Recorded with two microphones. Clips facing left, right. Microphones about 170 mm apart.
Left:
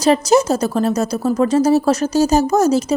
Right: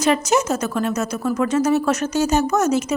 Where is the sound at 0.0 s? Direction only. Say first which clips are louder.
Left 5 dB; 35° left (ahead or behind).